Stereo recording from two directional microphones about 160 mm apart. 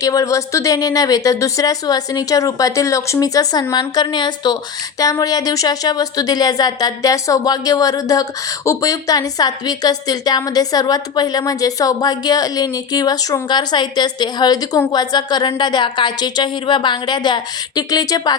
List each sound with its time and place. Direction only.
0.0 s speech: 20° left (ahead or behind)